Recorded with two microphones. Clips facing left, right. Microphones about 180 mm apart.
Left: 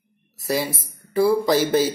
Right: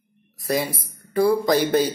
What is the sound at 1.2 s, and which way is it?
Speech, 5° left (ahead or behind).